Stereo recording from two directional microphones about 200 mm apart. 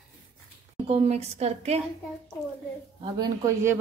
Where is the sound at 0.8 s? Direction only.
30° right (ahead or behind).